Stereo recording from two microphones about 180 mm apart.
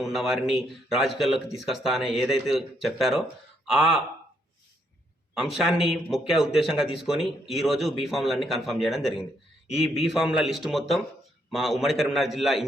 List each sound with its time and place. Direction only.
0.0 s a man's voice: centre (ahead or behind)
5.5 s speech: centre (ahead or behind)
9.6 s a man's voice: 35° left (ahead or behind)
10.0 s speech: centre (ahead or behind)